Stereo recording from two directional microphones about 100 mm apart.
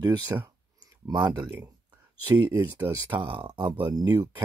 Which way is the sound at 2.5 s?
40° right (ahead or behind).